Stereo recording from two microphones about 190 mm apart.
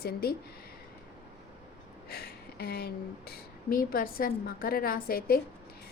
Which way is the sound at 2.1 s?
55° left (ahead or behind).